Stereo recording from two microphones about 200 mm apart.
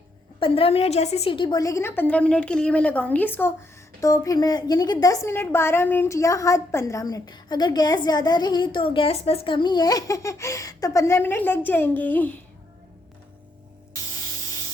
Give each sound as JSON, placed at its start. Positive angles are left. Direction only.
{"t": 0.3, "sound": "a woman's voice", "side_deg": 25}